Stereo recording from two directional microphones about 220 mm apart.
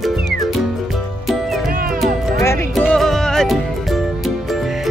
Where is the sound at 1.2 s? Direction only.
Centre (ahead or behind).